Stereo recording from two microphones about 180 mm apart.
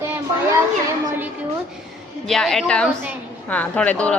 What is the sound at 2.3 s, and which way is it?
A woman's voice, centre (ahead or behind).